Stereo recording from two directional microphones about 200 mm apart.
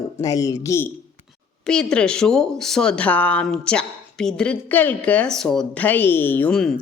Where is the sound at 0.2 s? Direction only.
15° left (ahead or behind).